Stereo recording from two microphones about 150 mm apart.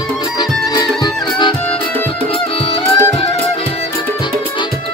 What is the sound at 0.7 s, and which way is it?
Music, 30° left (ahead or behind).